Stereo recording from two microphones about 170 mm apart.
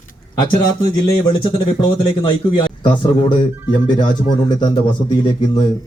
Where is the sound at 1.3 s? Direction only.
30° left (ahead or behind).